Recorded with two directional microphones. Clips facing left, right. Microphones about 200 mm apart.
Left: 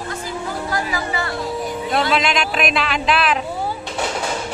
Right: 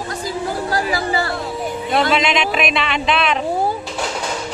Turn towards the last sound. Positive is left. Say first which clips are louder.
# even
turn(degrees=0)  # may be behind; listen again after turning